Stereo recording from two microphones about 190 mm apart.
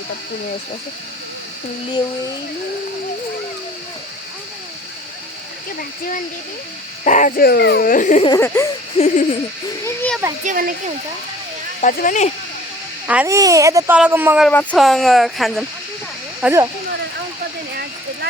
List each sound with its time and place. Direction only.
7.0 s speech: 40° left (ahead or behind)
8.3 s a sound: 15° left (ahead or behind)
9.0 s speech: 35° left (ahead or behind)
9.8 s a sound: 10° left (ahead or behind)
10.4 s speech: 45° right (ahead or behind)
11.8 s speech: 40° left (ahead or behind)
13.1 s speech: 10° right (ahead or behind)
14.4 s speech: 5° left (ahead or behind)
16.4 s speech: 15° right (ahead or behind)